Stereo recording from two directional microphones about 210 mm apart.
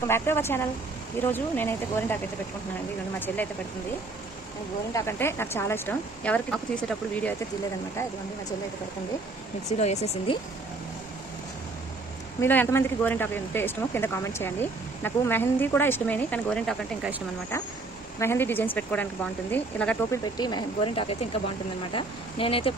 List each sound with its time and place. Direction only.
0.1 s speech: 10° left (ahead or behind)
3.3 s speech: 10° left (ahead or behind)
4.9 s speech: 10° left (ahead or behind)
9.8 s speech: 30° left (ahead or behind)
12.4 s speech: 10° left (ahead or behind)
18.2 s speech: 10° left (ahead or behind)
20.3 s speech: 20° left (ahead or behind)